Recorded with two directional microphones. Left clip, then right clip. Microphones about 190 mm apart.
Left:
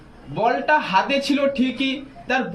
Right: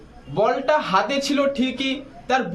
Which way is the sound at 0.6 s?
20° right (ahead or behind).